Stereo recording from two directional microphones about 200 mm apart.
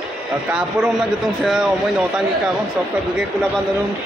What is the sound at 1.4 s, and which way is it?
Speech, centre (ahead or behind).